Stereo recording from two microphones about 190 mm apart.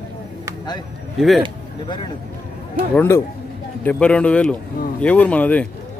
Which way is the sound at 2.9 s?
10° left (ahead or behind).